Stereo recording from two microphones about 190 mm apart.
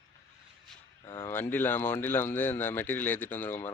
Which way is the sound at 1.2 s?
10° left (ahead or behind).